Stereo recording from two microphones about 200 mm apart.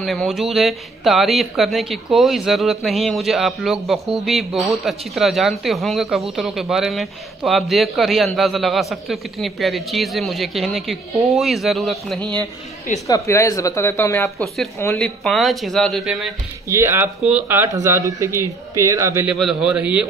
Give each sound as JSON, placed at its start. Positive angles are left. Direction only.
{"t": 0.0, "sound": "speech", "side_deg": 0}
{"t": 12.2, "sound": "a man's voice", "side_deg": -20}
{"t": 13.0, "sound": "speech", "side_deg": 15}
{"t": 16.6, "sound": "speech", "side_deg": -15}
{"t": 19.3, "sound": "speech", "side_deg": -5}